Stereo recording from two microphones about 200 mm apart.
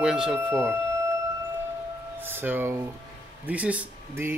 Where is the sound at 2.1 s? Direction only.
10° right (ahead or behind).